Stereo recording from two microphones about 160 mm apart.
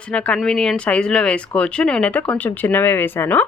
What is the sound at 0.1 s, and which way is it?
A woman's voice, 5° left (ahead or behind).